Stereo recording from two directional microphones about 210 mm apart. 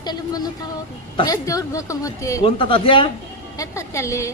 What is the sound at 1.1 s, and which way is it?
Speech, 15° left (ahead or behind).